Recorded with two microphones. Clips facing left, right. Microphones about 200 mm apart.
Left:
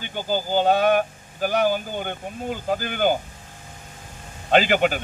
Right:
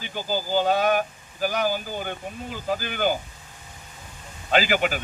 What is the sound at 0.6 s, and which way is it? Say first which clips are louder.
Speech: left 5 dB; 55° left (ahead or behind).